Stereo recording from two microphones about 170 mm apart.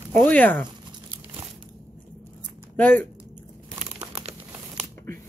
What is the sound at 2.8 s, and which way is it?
Speech, 10° left (ahead or behind).